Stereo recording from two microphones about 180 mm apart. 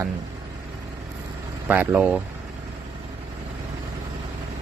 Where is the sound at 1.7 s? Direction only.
10° right (ahead or behind).